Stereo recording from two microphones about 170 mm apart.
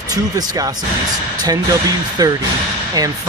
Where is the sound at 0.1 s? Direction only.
20° right (ahead or behind).